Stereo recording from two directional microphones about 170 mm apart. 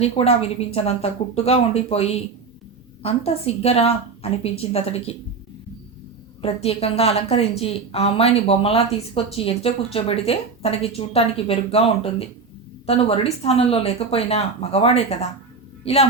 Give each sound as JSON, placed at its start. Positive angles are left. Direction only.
{"t": 0.0, "sound": "a woman's voice", "side_deg": 35}
{"t": 6.4, "sound": "a woman's voice", "side_deg": 35}